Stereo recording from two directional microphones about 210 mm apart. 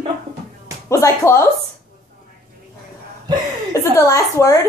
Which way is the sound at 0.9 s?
15° left (ahead or behind).